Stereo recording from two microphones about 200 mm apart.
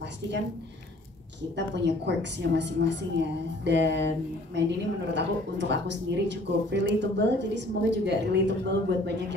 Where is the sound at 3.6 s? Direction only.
60° right (ahead or behind).